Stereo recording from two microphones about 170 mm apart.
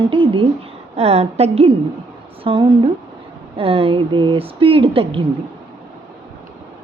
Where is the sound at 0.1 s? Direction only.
30° right (ahead or behind).